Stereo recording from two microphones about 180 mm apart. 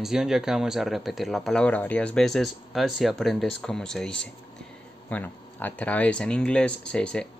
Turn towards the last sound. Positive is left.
turn(degrees=5)  # may be behind; listen again after turning